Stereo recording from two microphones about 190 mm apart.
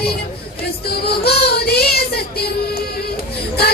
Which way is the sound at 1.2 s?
55° left (ahead or behind).